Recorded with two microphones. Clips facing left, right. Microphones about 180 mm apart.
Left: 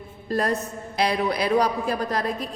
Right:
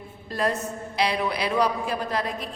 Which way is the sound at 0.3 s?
40° left (ahead or behind).